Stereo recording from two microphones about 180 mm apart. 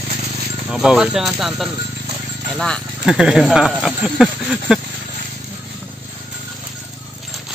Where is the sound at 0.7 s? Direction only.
5° right (ahead or behind).